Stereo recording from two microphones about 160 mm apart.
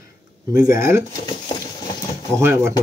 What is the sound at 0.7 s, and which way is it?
Speech, 15° right (ahead or behind).